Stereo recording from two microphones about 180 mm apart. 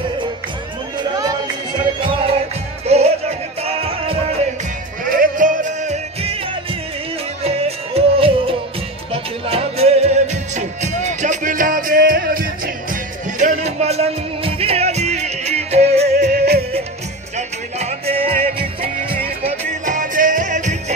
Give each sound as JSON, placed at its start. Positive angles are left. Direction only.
{"t": 0.9, "sound": "crowd", "side_deg": -25}
{"t": 2.9, "sound": "music", "side_deg": -35}
{"t": 5.1, "sound": "music", "side_deg": -50}
{"t": 16.0, "sound": "music", "side_deg": -65}
{"t": 17.4, "sound": "music", "side_deg": -35}